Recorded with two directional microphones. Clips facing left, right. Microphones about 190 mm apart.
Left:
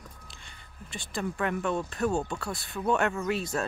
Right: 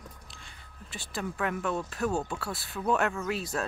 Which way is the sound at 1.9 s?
5° right (ahead or behind).